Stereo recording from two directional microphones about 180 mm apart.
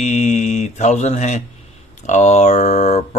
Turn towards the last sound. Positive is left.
turn(degrees=40)  # may be behind; listen again after turning